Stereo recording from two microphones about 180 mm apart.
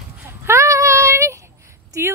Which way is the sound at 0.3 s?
15° right (ahead or behind).